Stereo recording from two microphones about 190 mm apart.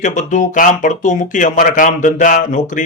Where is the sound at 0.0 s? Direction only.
40° left (ahead or behind).